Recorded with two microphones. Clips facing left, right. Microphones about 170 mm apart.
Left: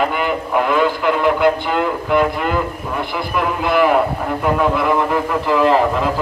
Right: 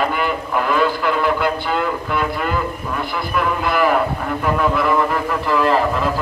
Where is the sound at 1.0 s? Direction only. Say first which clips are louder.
Left 4 dB; 15° left (ahead or behind).